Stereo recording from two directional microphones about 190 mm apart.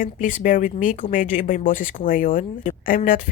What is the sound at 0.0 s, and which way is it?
Speech, 45° left (ahead or behind).